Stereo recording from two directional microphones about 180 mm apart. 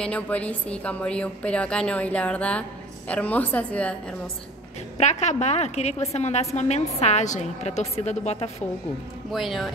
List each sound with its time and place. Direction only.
0.0 s a woman's voice: 5° left (ahead or behind)
4.9 s a woman's voice: 40° left (ahead or behind)
9.3 s speech: centre (ahead or behind)